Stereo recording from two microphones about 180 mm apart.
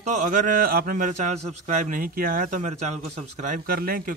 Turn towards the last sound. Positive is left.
turn(degrees=-55)  # may be behind; listen again after turning